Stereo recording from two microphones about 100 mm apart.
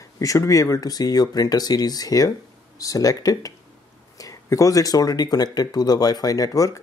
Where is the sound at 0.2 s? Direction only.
35° left (ahead or behind).